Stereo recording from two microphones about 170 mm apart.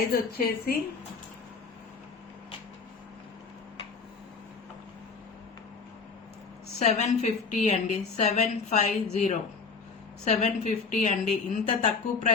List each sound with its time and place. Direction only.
0.3 s a woman's voice: 65° left (ahead or behind)
6.7 s a woman's voice: 40° left (ahead or behind)